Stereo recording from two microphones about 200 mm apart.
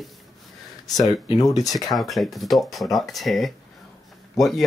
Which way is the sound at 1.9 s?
Centre (ahead or behind).